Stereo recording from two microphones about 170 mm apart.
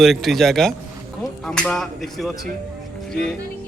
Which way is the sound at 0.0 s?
Centre (ahead or behind).